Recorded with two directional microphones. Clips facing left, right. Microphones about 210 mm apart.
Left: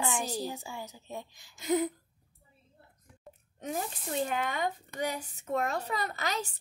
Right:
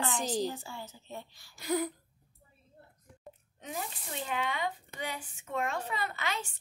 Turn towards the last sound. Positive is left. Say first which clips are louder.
# left 2 dB
turn(degrees=40)  # may be behind; listen again after turning